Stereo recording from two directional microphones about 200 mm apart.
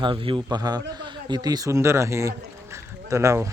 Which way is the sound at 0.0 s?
25° right (ahead or behind).